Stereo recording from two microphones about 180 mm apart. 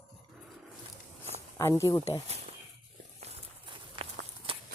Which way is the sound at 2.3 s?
35° right (ahead or behind).